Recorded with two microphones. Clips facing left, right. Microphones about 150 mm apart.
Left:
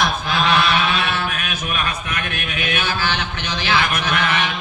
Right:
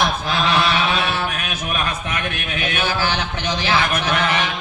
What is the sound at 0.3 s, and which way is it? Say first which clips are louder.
Honk: left 2 dB; 30° right (ahead or behind).